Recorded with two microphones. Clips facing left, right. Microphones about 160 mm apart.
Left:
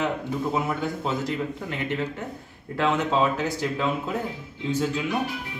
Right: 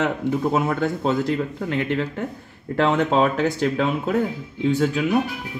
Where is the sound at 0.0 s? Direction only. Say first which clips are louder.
Right 5 dB; 70° right (ahead or behind).